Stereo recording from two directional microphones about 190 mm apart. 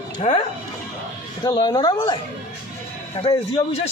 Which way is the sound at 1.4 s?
20° left (ahead or behind).